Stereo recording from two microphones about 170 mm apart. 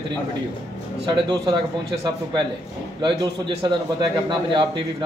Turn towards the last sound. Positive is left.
turn(degrees=-30)  # may be behind; listen again after turning